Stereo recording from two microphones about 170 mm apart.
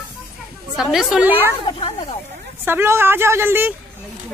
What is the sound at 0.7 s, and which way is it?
Speech, centre (ahead or behind).